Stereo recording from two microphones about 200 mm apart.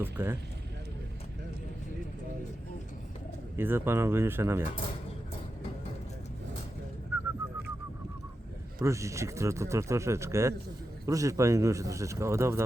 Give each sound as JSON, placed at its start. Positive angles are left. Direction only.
{"t": 0.0, "sound": "speech", "side_deg": -10}
{"t": 3.5, "sound": "speech", "side_deg": -10}
{"t": 7.1, "sound": "bird", "side_deg": -15}
{"t": 8.8, "sound": "speech", "side_deg": -15}